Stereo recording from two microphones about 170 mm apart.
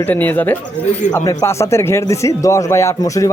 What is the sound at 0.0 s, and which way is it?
Speech, 10° left (ahead or behind).